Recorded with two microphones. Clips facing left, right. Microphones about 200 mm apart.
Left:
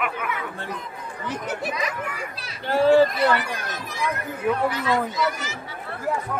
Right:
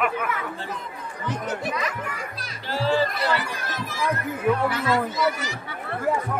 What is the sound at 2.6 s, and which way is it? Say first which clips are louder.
Speech: left 7 dB; 55° left (ahead or behind).